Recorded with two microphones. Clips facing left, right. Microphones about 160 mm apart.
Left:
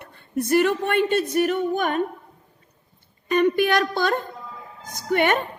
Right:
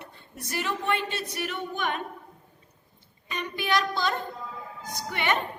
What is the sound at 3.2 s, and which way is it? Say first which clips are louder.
A woman's voice: left 13 dB; 55° left (ahead or behind).